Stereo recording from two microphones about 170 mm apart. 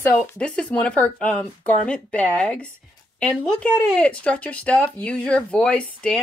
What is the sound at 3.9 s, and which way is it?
A child's voice, 5° left (ahead or behind).